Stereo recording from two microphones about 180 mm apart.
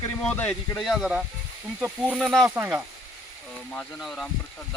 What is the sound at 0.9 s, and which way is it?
Speech, centre (ahead or behind).